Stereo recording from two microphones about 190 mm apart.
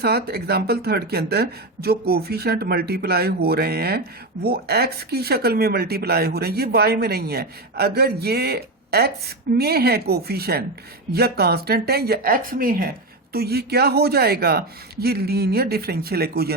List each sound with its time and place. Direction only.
0.0 s speech: 55° right (ahead or behind)